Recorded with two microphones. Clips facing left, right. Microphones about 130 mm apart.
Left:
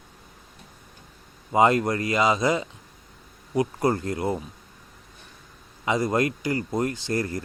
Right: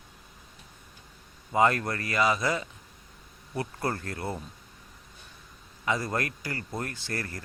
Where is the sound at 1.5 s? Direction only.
20° left (ahead or behind).